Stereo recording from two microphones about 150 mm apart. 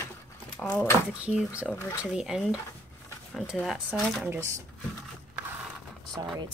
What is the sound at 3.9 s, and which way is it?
Speech, 10° right (ahead or behind).